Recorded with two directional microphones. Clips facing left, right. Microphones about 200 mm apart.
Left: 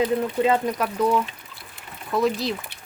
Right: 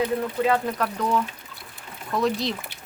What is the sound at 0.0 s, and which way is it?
Speech, 20° left (ahead or behind).